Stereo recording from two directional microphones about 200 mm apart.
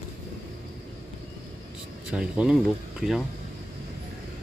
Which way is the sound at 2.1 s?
5° right (ahead or behind).